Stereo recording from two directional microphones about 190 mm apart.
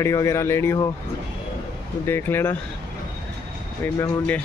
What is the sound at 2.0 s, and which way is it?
Speech, 10° left (ahead or behind).